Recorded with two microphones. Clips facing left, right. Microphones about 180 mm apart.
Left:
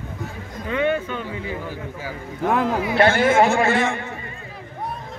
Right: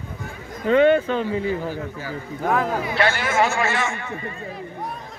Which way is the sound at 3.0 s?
50° left (ahead or behind).